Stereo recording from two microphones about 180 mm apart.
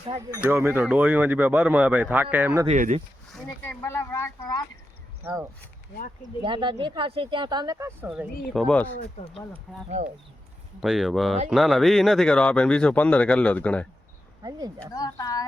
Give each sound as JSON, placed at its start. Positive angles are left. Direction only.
{"t": 0.3, "sound": "speech", "side_deg": -10}
{"t": 2.6, "sound": "speech", "side_deg": -40}
{"t": 3.6, "sound": "speech", "side_deg": 15}
{"t": 5.2, "sound": "speech", "side_deg": -10}
{"t": 6.4, "sound": "speech", "side_deg": -25}
{"t": 8.5, "sound": "speech", "side_deg": 5}
{"t": 9.2, "sound": "speech", "side_deg": 35}
{"t": 10.0, "sound": "speech", "side_deg": -40}
{"t": 10.8, "sound": "speech", "side_deg": 0}
{"t": 14.9, "sound": "speech", "side_deg": 20}